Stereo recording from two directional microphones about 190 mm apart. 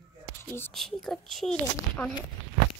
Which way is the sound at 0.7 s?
Centre (ahead or behind).